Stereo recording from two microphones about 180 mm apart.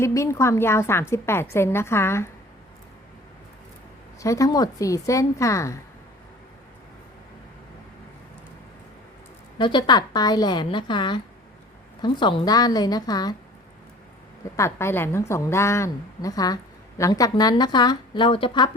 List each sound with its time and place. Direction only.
0.0 s a woman's voice: 15° left (ahead or behind)
4.2 s a woman's voice: 15° left (ahead or behind)
9.6 s a woman's voice: 25° left (ahead or behind)
14.5 s a woman's voice: 15° left (ahead or behind)